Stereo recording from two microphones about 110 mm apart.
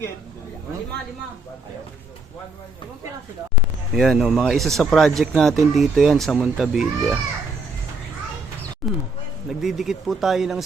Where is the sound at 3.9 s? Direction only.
Centre (ahead or behind).